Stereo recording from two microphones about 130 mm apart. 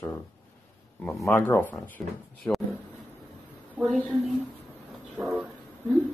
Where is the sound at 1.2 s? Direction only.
20° left (ahead or behind).